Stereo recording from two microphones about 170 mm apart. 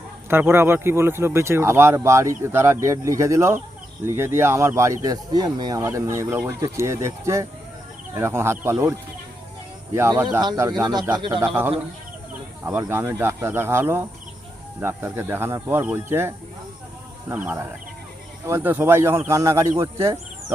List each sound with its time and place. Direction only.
0.3 s speech: 15° right (ahead or behind)
10.4 s speech: 25° right (ahead or behind)